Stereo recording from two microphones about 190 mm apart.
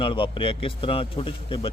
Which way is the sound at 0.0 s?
30° left (ahead or behind).